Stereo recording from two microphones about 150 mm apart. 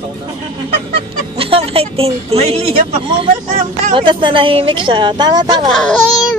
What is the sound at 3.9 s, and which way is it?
Speech, 35° right (ahead or behind).